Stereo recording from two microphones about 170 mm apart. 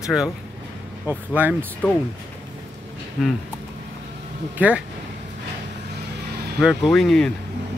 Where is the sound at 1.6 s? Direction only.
10° left (ahead or behind).